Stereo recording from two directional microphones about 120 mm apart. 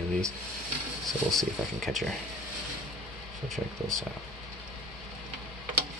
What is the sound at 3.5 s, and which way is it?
Speech, 5° left (ahead or behind).